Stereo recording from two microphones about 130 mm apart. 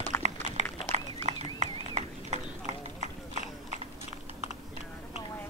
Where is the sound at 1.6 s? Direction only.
65° right (ahead or behind).